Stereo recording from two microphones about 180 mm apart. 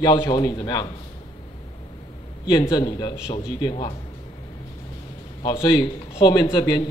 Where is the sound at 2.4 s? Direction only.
25° left (ahead or behind).